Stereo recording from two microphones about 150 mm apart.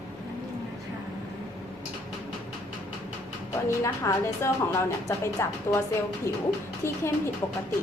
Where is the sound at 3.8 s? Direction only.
20° left (ahead or behind).